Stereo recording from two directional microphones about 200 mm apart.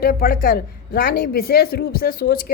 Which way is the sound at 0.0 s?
45° left (ahead or behind).